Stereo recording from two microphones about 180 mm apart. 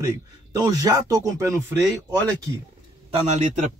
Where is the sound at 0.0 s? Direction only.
20° right (ahead or behind).